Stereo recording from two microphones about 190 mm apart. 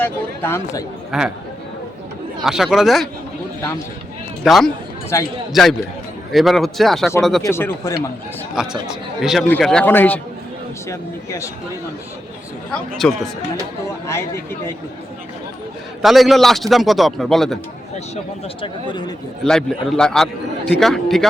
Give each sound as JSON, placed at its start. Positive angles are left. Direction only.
{"t": 0.0, "sound": "speech", "side_deg": 10}
{"t": 1.1, "sound": "a man's voice", "side_deg": 0}
{"t": 2.4, "sound": "a man's voice", "side_deg": 0}
{"t": 4.4, "sound": "a man's voice", "side_deg": 0}
{"t": 5.1, "sound": "speech", "side_deg": 15}
{"t": 5.6, "sound": "a man's voice", "side_deg": 0}
{"t": 7.4, "sound": "speech", "side_deg": 10}
{"t": 8.6, "sound": "a man's voice", "side_deg": 0}
{"t": 13.0, "sound": "a man's voice", "side_deg": 0}
{"t": 16.0, "sound": "a man's voice", "side_deg": 0}
{"t": 18.6, "sound": "speech", "side_deg": 25}
{"t": 19.5, "sound": "a man's voice", "side_deg": 5}